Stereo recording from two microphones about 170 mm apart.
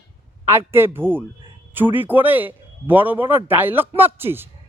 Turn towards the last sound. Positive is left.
turn(degrees=-15)  # may be behind; listen again after turning